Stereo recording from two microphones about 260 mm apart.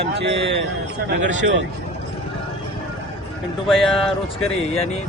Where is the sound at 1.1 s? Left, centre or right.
Right.